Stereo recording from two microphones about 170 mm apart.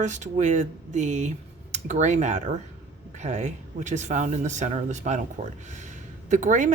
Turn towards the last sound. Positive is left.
turn(degrees=-45)  # may be behind; listen again after turning